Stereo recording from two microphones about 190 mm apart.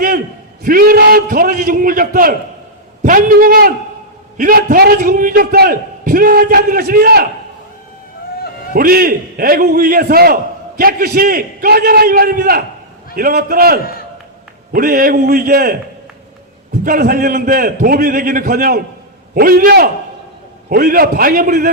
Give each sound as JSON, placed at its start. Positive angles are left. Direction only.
{"t": 0.6, "sound": "a man's voice", "side_deg": -50}
{"t": 8.7, "sound": "a man's voice", "side_deg": -50}
{"t": 16.8, "sound": "a man's voice", "side_deg": -55}